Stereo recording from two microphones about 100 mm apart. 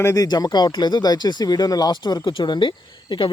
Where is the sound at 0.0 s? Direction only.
35° left (ahead or behind).